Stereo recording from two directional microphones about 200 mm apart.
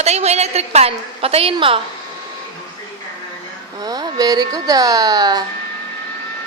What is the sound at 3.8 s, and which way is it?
Speech, 20° right (ahead or behind).